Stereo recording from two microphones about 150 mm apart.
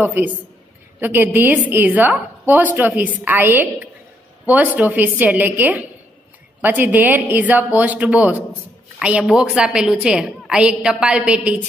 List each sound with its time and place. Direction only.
0.0 s a woman's voice: 10° right (ahead or behind)